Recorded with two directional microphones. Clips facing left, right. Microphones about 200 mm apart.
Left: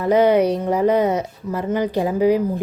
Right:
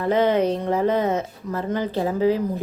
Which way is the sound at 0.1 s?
10° left (ahead or behind).